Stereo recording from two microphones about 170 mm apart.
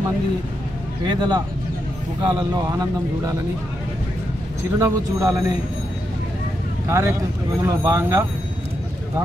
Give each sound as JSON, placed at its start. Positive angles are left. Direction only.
{"t": 1.0, "sound": "speech", "side_deg": -25}
{"t": 4.7, "sound": "speech", "side_deg": -15}
{"t": 6.9, "sound": "speech", "side_deg": -15}